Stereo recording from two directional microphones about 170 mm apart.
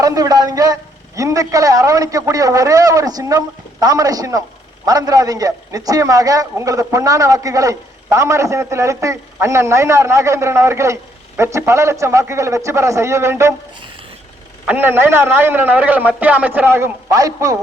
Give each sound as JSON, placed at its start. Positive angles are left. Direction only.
{"t": 0.0, "sound": "a man's voice", "side_deg": -20}
{"t": 14.7, "sound": "a man's voice", "side_deg": -10}